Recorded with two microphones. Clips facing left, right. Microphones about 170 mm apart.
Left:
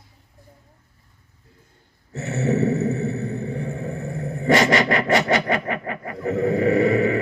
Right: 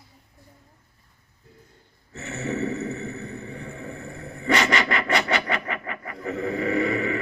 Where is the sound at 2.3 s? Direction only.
40° left (ahead or behind).